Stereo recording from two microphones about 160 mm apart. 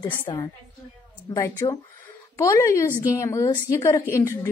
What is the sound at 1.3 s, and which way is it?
A woman's voice, 20° left (ahead or behind).